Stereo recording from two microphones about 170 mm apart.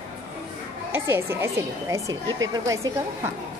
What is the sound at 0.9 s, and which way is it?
Speech, 15° right (ahead or behind).